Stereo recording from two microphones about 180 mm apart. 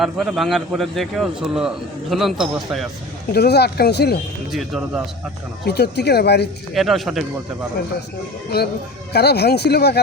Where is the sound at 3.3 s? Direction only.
65° left (ahead or behind).